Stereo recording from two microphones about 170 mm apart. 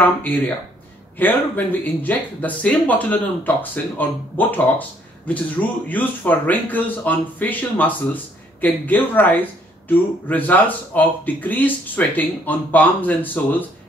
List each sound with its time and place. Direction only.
0.0 s speech: 10° left (ahead or behind)